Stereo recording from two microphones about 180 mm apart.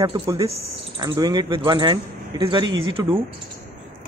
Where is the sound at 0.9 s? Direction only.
25° right (ahead or behind).